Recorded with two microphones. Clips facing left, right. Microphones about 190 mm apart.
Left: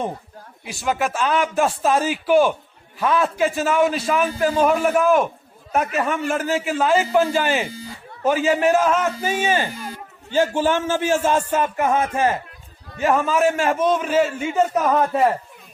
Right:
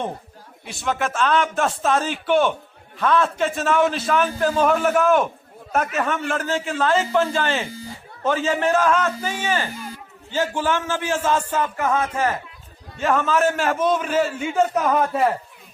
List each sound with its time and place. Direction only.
0.6 s a man's voice: 5° left (ahead or behind); by 12.4 s 20° left (ahead or behind)
13.0 s a man's voice: 5° left (ahead or behind)